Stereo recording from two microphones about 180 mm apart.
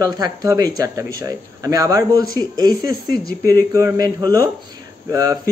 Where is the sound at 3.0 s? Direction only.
55° left (ahead or behind).